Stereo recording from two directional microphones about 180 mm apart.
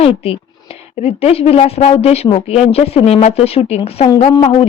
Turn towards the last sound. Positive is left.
turn(degrees=25)  # may be behind; listen again after turning